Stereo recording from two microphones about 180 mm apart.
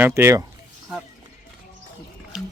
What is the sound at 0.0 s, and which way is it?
Speech, 15° right (ahead or behind).